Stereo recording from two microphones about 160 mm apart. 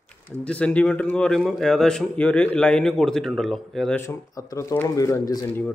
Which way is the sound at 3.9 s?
15° left (ahead or behind).